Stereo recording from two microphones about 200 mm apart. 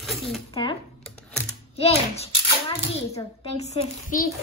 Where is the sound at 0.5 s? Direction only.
25° left (ahead or behind).